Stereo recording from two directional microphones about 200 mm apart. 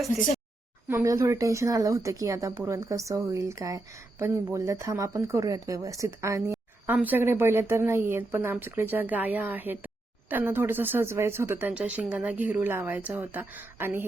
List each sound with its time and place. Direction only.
0.9 s speech: 15° right (ahead or behind)